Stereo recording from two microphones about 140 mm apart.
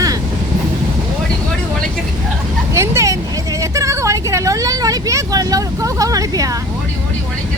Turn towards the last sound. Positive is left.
turn(degrees=-25)  # may be behind; listen again after turning